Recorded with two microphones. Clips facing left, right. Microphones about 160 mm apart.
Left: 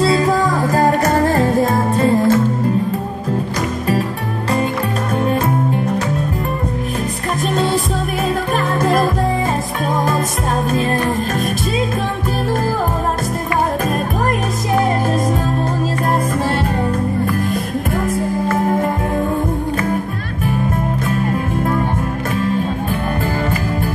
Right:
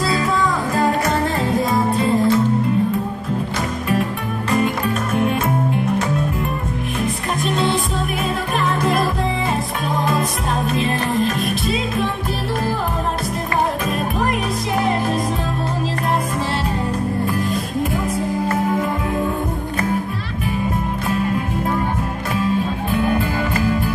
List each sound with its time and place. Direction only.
0.0 s music: 35° left (ahead or behind)
7.4 s music: 40° left (ahead or behind)
10.7 s music: 45° left (ahead or behind)